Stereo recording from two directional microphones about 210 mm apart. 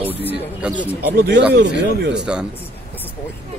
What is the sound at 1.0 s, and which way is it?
Speech, 50° right (ahead or behind).